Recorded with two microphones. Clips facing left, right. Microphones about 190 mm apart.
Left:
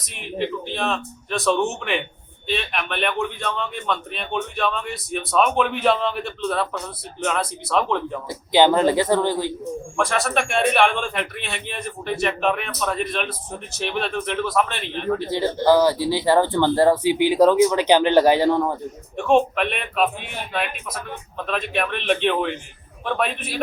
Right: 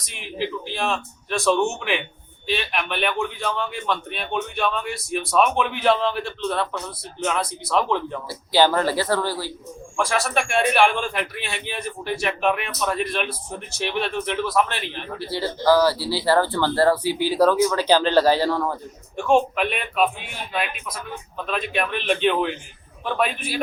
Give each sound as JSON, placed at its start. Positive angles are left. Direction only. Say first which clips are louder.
{"t": 0.0, "sound": "a man's voice", "louder": "left 2 dB", "side_deg": 0}
{"t": 8.3, "sound": "speech", "louder": "left 2 dB", "side_deg": 20}
{"t": 10.0, "sound": "a man's voice", "louder": "even", "side_deg": 0}
{"t": 15.3, "sound": "speech", "louder": "left 1 dB", "side_deg": 20}
{"t": 19.1, "sound": "a man's voice", "louder": "left 1 dB", "side_deg": 0}